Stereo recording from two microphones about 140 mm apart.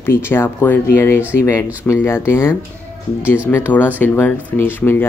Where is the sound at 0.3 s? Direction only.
15° left (ahead or behind).